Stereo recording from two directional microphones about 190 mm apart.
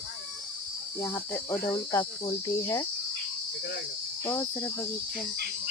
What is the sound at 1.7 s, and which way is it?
Speech, 20° left (ahead or behind).